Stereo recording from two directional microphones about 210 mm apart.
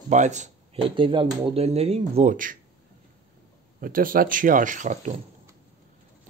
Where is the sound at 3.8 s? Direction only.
45° right (ahead or behind).